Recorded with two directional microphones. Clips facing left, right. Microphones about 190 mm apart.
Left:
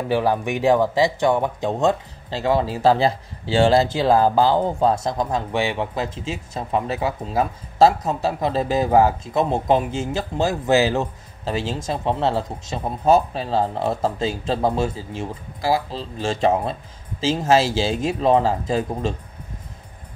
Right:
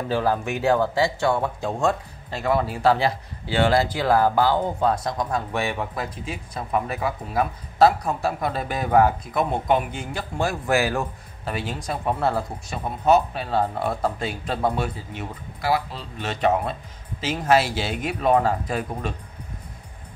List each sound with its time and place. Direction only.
0.1 s speech: 15° left (ahead or behind)